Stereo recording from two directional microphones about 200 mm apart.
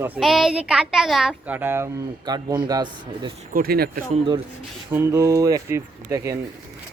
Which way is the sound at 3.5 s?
50° right (ahead or behind).